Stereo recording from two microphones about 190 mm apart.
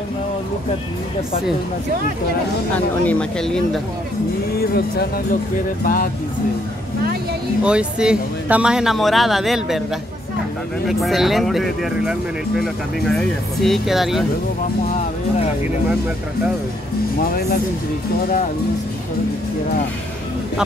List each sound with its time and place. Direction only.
2.7 s speech: 5° left (ahead or behind)
4.6 s speech: 55° left (ahead or behind)
7.6 s speech: 5° right (ahead or behind)
10.9 s speech: centre (ahead or behind)